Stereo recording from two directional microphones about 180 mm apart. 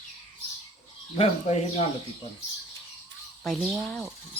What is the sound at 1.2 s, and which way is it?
Speech, 35° left (ahead or behind).